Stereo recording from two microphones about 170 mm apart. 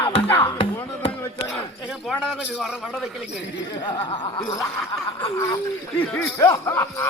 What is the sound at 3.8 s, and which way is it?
Laughter, 25° left (ahead or behind).